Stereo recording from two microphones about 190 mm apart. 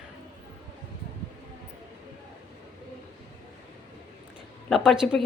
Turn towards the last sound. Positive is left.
turn(degrees=0)  # may be behind; listen again after turning